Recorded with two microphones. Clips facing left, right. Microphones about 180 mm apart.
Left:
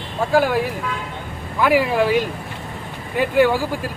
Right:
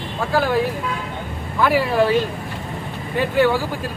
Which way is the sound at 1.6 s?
10° left (ahead or behind).